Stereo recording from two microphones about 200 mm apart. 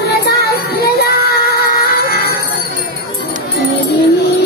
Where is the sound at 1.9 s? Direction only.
50° left (ahead or behind).